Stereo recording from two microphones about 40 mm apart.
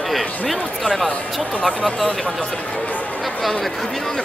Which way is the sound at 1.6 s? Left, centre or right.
Left.